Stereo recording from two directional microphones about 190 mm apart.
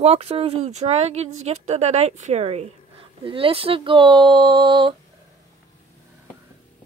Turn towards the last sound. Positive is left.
turn(degrees=-25)  # may be behind; listen again after turning